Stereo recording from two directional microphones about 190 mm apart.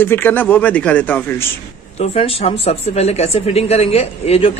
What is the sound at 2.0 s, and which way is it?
Speech, 30° left (ahead or behind).